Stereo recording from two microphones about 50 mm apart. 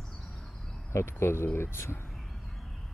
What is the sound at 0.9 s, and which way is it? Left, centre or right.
Speech, left.